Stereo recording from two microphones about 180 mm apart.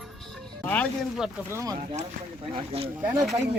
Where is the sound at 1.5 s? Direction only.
20° right (ahead or behind).